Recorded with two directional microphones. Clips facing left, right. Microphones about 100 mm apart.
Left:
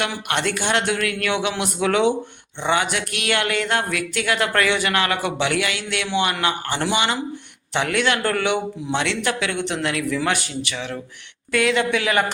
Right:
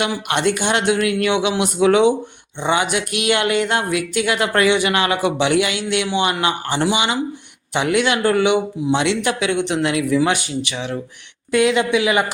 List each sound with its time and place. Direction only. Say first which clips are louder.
0.0 s a man's voice: right 4 dB; 20° right (ahead or behind)